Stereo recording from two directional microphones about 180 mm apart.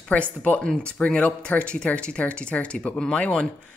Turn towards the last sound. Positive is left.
turn(degrees=5)  # may be behind; listen again after turning